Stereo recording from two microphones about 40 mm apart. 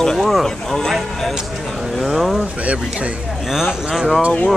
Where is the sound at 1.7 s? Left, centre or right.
Centre.